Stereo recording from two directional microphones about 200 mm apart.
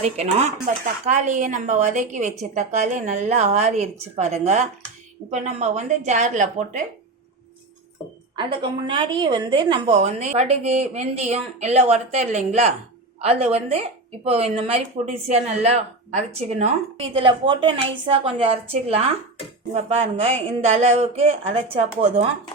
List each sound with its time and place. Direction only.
0.0 s a woman's voice: 30° right (ahead or behind)
8.4 s a woman's voice: 25° right (ahead or behind)